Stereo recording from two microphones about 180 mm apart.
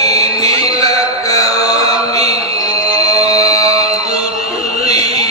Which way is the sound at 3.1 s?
20° left (ahead or behind).